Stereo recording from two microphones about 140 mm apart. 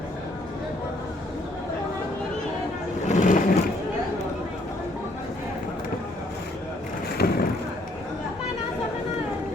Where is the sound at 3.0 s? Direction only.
60° left (ahead or behind).